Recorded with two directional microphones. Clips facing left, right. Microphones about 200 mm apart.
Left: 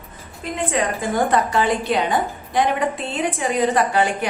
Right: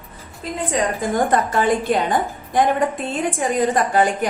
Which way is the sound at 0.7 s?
40° right (ahead or behind).